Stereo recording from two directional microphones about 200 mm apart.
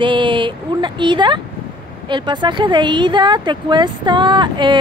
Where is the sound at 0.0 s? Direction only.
25° right (ahead or behind).